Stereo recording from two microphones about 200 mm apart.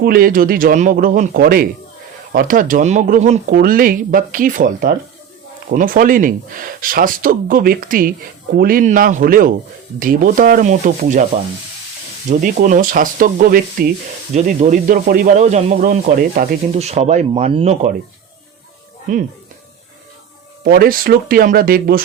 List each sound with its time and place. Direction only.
0.0 s speech: 45° right (ahead or behind)
12.3 s speech: 40° right (ahead or behind)
14.3 s speech: 35° right (ahead or behind)
16.7 s speech: 30° right (ahead or behind)
20.7 s speech: 50° right (ahead or behind)